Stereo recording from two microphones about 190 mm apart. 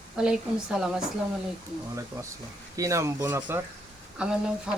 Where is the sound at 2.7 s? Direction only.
15° right (ahead or behind).